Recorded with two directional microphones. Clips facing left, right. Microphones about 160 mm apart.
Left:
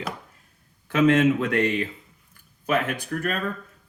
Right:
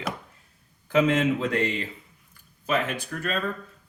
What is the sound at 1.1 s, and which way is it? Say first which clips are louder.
Speech: left 4 dB; 65° left (ahead or behind).